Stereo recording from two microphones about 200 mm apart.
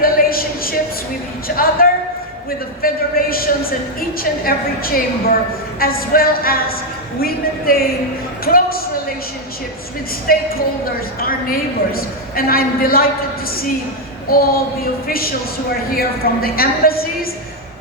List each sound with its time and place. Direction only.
0.0 s a sound: 45° left (ahead or behind)
2.8 s a woman's voice: 45° left (ahead or behind)
10.3 s a woman's voice: 45° left (ahead or behind)